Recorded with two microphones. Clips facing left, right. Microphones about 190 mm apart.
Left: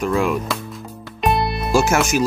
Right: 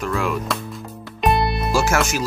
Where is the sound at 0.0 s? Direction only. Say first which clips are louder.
Left 4 dB; 15° left (ahead or behind).